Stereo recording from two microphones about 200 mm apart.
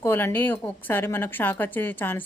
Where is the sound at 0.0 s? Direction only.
10° left (ahead or behind).